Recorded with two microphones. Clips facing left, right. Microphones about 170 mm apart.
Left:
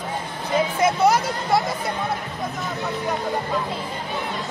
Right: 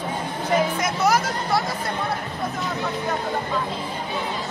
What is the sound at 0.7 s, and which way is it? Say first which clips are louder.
Music: left 3 dB; 25° left (ahead or behind).